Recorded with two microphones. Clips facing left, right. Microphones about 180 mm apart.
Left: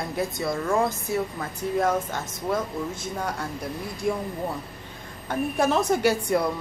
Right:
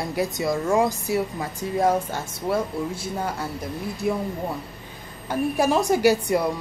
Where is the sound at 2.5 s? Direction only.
30° right (ahead or behind).